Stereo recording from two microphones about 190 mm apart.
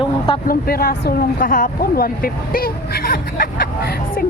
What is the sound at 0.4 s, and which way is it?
Speech, 50° left (ahead or behind).